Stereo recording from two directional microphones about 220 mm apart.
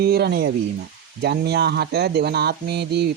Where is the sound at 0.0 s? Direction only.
45° right (ahead or behind).